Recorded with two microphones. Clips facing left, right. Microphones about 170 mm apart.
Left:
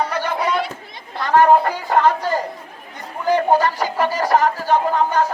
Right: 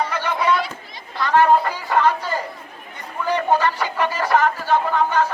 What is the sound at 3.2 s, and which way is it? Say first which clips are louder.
Speech: left 3 dB; 45° left (ahead or behind).